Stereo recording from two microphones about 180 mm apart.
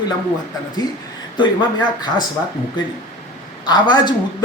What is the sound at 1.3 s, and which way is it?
Speech, 25° left (ahead or behind).